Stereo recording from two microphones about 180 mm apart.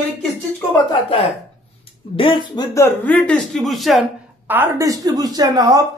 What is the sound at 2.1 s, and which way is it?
Speech, 30° left (ahead or behind).